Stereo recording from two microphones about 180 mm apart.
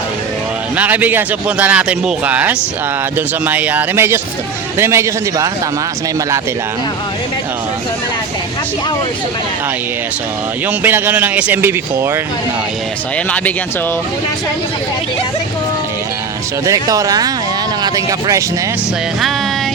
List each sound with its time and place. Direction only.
0.8 s speech: 10° right (ahead or behind)
10.7 s speech: 10° right (ahead or behind)
13.1 s speech: 10° left (ahead or behind)
16.6 s speech: 20° right (ahead or behind)